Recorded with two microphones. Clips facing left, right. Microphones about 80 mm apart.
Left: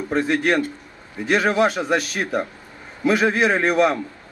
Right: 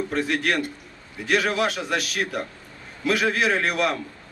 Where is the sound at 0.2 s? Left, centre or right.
Left.